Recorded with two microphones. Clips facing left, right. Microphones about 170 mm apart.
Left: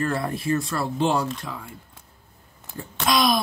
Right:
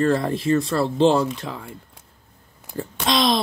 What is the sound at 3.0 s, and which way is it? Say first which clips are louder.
Speech: right 1 dB; 25° right (ahead or behind).